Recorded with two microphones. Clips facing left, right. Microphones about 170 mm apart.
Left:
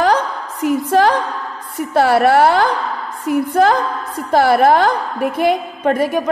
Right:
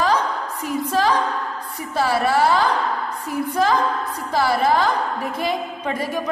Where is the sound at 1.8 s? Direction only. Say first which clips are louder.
Left 8 dB; 70° left (ahead or behind).